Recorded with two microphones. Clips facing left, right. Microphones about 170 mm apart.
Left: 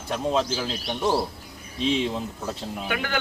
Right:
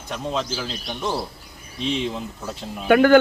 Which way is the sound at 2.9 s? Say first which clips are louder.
Right 16 dB; 50° right (ahead or behind).